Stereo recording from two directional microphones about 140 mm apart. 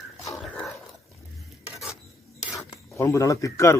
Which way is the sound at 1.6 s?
5° right (ahead or behind).